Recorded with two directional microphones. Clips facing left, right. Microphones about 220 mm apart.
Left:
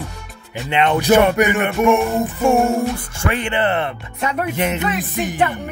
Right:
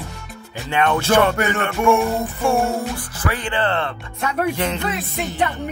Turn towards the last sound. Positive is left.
turn(degrees=15)  # may be behind; listen again after turning